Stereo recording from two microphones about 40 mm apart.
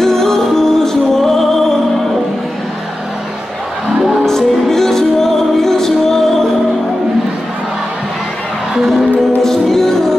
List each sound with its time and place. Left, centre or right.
0.0 s music: centre
4.3 s music: centre
9.4 s music: centre